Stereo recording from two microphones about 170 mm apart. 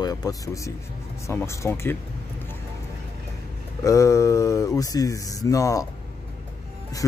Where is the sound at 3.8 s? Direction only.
20° left (ahead or behind).